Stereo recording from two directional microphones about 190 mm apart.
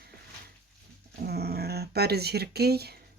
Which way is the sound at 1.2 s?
55° right (ahead or behind).